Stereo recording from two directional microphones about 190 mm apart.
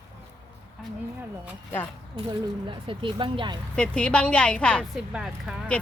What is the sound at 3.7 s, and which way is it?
A woman's voice, 5° left (ahead or behind).